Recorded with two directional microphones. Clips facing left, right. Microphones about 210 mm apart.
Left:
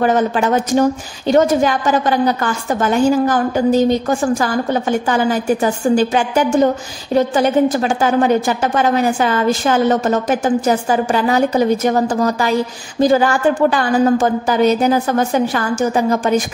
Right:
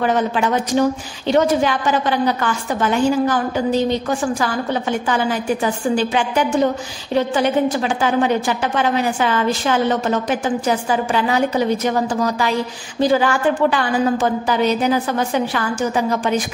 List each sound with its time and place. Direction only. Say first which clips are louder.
0.0 s a woman's voice: left 3 dB; 45° left (ahead or behind)